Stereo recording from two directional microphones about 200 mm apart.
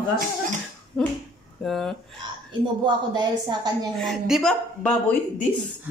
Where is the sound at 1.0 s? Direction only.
Centre (ahead or behind).